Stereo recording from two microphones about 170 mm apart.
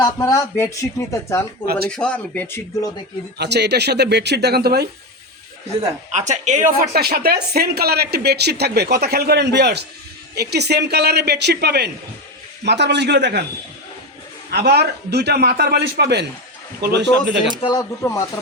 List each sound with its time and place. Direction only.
0.0 s speech: 20° left (ahead or behind)
1.6 s speech: 65° right (ahead or behind)
1.9 s speech: 5° left (ahead or behind)
3.3 s speech: 75° right (ahead or behind)
6.1 s a woman's voice: 45° right (ahead or behind)
6.9 s speech: 65° right (ahead or behind)
12.6 s a man's voice: 90° right
14.5 s a man's voice: 75° right (ahead or behind)
17.6 s speech: 25° left (ahead or behind)